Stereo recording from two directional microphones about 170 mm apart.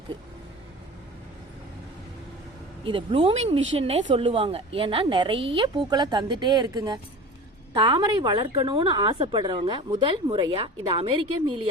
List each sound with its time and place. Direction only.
2.8 s a woman's voice: 30° right (ahead or behind)